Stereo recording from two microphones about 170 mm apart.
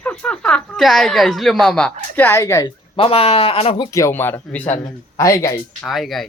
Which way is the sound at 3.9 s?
20° left (ahead or behind).